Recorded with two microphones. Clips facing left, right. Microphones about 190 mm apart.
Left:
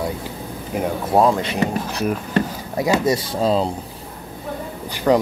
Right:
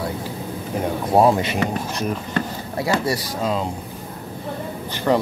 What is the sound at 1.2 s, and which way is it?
Speech, 15° right (ahead or behind).